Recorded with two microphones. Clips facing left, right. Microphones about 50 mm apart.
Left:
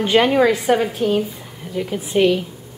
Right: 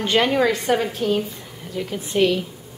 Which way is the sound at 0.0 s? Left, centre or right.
Centre.